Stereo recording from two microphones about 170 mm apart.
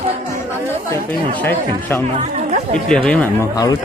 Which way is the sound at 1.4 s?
10° left (ahead or behind).